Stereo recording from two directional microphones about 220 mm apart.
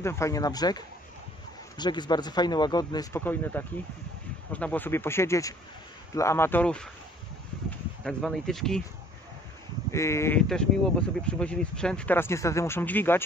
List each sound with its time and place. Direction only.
0.0 s speech: 15° left (ahead or behind)
8.0 s speech: 5° left (ahead or behind)
9.8 s speech: 15° left (ahead or behind)